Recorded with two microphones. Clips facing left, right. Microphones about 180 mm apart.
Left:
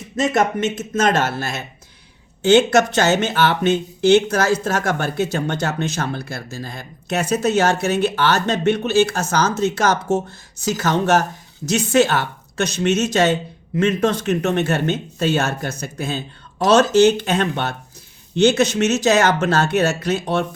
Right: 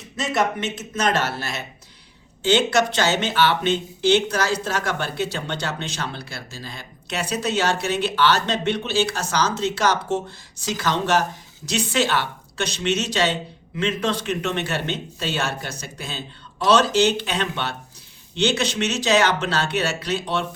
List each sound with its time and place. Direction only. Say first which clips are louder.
0.2 s speech: left 5 dB; 50° left (ahead or behind)